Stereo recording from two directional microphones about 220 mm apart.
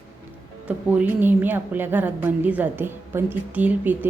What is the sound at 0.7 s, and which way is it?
A woman's voice, 5° right (ahead or behind).